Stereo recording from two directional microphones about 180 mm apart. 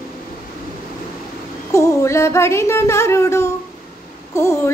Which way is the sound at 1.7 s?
15° left (ahead or behind).